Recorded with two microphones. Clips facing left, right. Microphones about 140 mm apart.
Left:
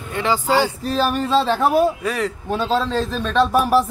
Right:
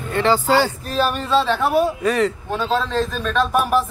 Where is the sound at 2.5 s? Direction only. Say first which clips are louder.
Left 1 dB; 30° left (ahead or behind).